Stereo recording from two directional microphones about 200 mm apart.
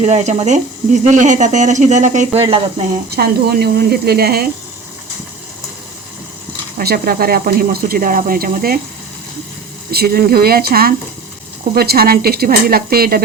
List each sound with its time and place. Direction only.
0.0 s speech: 35° right (ahead or behind)
3.1 s speech: 50° right (ahead or behind)
6.7 s speech: 50° right (ahead or behind)
9.9 s speech: 50° right (ahead or behind)